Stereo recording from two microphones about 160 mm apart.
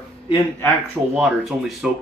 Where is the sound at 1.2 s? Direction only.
Centre (ahead or behind).